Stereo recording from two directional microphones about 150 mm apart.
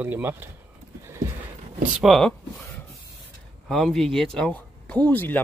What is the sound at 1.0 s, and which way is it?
Horse, 20° right (ahead or behind).